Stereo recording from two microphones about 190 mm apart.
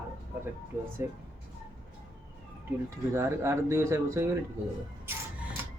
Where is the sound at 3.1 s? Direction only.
15° right (ahead or behind).